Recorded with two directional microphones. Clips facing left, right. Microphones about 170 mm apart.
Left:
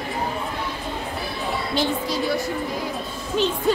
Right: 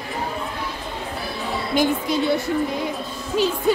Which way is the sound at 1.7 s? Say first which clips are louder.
Right 5 dB; 20° right (ahead or behind).